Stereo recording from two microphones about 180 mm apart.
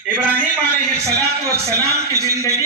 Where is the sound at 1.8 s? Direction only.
60° right (ahead or behind).